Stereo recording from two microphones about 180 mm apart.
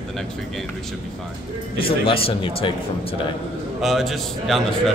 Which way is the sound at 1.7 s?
30° left (ahead or behind).